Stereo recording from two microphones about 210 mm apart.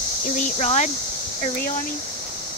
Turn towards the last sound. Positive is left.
turn(degrees=35)  # may be behind; listen again after turning